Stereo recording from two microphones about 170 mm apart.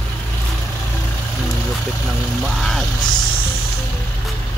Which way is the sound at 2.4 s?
Centre (ahead or behind).